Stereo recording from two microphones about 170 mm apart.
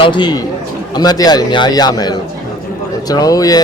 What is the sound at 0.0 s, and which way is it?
Speech, 25° left (ahead or behind).